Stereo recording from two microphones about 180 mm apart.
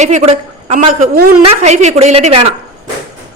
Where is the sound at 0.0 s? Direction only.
40° right (ahead or behind).